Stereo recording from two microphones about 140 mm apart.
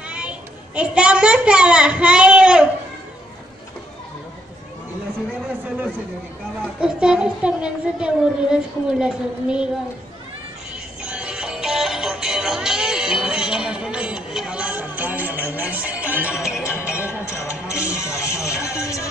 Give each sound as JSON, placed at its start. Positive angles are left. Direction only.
{"t": 0.0, "sound": "a sound", "side_deg": -10}
{"t": 6.8, "sound": "a woman's voice", "side_deg": -5}
{"t": 10.7, "sound": "music", "side_deg": -10}
{"t": 17.3, "sound": "speech", "side_deg": 20}